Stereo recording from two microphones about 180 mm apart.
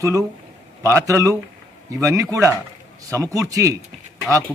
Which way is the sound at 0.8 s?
15° right (ahead or behind).